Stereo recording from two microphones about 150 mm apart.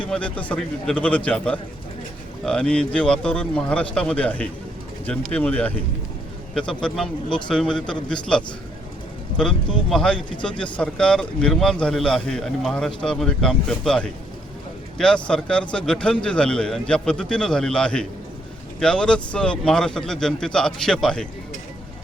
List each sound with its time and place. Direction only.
0.1 s a man's voice: 10° left (ahead or behind)